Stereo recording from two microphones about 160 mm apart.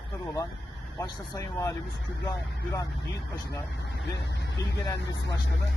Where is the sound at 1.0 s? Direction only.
25° left (ahead or behind).